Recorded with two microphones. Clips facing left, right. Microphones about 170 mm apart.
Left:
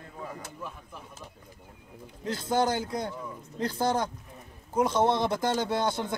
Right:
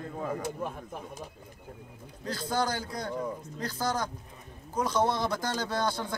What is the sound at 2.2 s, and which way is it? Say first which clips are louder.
Speech: left 4 dB; 25° left (ahead or behind).